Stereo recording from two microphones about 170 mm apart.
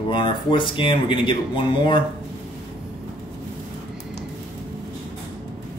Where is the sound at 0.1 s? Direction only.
30° left (ahead or behind).